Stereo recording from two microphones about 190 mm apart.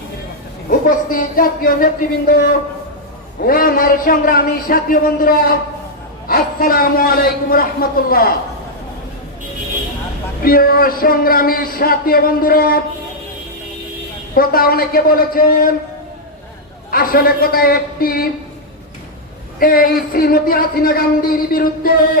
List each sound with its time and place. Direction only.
0.7 s speech: 45° left (ahead or behind)
10.4 s speech: 50° left (ahead or behind)
14.3 s speech: 50° left (ahead or behind)
16.9 s speech: 50° left (ahead or behind)
19.5 s speech: 50° left (ahead or behind)